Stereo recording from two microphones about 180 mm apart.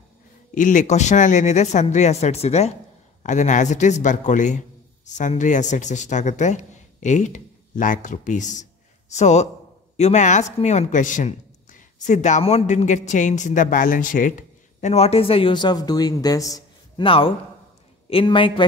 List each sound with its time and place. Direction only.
0.6 s a man's voice: 45° left (ahead or behind); by 18.6 s 30° left (ahead or behind)